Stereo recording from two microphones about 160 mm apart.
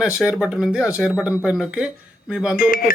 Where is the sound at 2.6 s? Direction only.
60° left (ahead or behind).